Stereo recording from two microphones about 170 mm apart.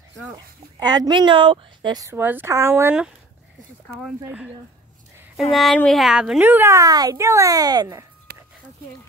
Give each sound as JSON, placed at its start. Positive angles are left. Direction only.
{"t": 0.7, "sound": "a woman's voice", "side_deg": -25}
{"t": 3.8, "sound": "speech", "side_deg": 5}
{"t": 5.5, "sound": "speech", "side_deg": 0}
{"t": 8.3, "sound": "a sound", "side_deg": -75}